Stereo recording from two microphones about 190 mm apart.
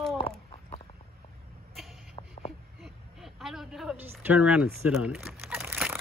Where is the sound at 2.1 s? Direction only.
35° left (ahead or behind).